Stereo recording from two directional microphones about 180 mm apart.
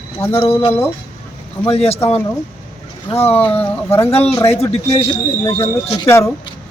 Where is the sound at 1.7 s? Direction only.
35° left (ahead or behind).